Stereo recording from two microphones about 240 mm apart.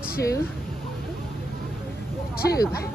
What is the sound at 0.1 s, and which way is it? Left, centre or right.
Speech, left.